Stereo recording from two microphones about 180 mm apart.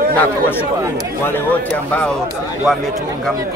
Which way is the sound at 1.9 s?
5° left (ahead or behind).